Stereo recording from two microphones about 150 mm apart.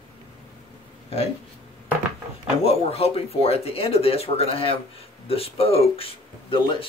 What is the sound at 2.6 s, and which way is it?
Speech, 40° left (ahead or behind).